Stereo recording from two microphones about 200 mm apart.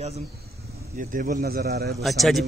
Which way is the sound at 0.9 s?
45° right (ahead or behind).